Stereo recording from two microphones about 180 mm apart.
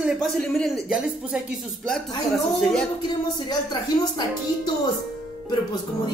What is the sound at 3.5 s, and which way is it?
Speech, 25° left (ahead or behind).